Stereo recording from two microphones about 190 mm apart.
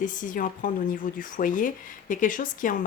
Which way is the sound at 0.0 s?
45° left (ahead or behind).